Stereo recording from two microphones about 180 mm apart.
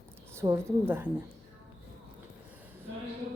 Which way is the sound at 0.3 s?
15° right (ahead or behind).